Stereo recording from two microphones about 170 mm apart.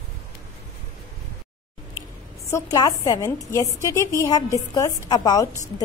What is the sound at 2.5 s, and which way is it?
A woman's voice, 20° left (ahead or behind).